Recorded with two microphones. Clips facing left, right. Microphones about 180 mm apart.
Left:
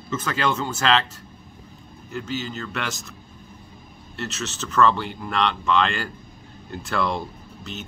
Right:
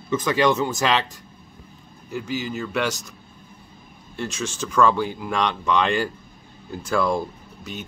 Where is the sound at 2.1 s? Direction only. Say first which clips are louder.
Right 2 dB; 15° right (ahead or behind).